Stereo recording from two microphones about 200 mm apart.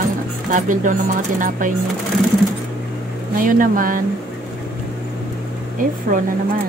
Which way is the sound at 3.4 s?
45° right (ahead or behind).